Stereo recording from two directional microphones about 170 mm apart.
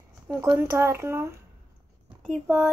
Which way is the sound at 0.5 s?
15° right (ahead or behind).